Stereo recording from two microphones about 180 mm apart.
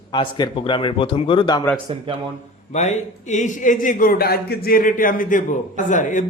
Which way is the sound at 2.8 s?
40° left (ahead or behind).